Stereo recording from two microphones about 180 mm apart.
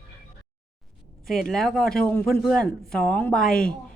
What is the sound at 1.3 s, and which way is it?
A man's voice, centre (ahead or behind).